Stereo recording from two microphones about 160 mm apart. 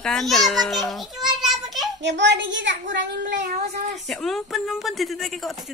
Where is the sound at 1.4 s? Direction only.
Centre (ahead or behind).